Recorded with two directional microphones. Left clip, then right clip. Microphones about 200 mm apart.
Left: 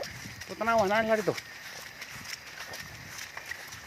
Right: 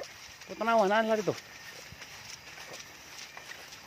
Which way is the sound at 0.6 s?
25° right (ahead or behind).